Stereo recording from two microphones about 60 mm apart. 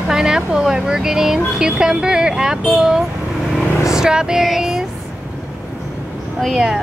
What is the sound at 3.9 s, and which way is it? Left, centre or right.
Speech, centre.